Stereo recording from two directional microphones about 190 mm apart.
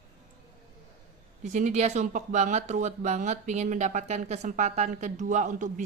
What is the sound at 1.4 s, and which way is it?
Speech, 40° right (ahead or behind).